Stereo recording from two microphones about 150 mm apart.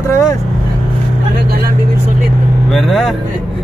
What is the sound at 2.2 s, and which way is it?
Vehicle, centre (ahead or behind).